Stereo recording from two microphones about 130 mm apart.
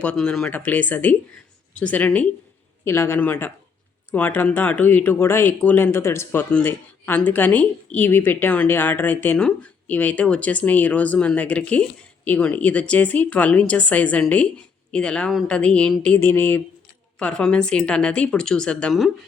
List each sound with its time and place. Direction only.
0.0 s speech: 10° left (ahead or behind)